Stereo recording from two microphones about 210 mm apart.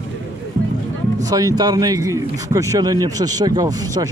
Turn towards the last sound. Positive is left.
turn(degrees=-15)  # may be behind; listen again after turning